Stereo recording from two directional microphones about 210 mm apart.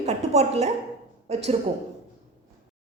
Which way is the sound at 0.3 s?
30° right (ahead or behind).